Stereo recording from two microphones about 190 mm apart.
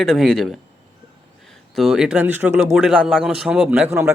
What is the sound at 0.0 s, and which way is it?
Speech, centre (ahead or behind).